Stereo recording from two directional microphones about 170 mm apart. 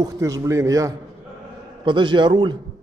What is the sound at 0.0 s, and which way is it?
Speech, 20° right (ahead or behind).